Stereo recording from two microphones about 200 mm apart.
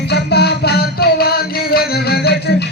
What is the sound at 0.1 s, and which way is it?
Music, 55° left (ahead or behind).